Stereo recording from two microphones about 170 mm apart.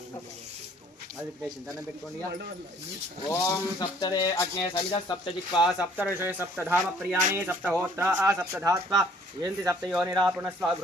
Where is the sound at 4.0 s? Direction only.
25° left (ahead or behind).